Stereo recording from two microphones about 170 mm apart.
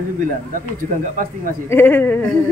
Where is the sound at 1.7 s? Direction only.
10° left (ahead or behind).